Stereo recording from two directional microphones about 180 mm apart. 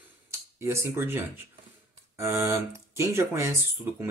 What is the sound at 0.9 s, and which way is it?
Speech, 10° right (ahead or behind).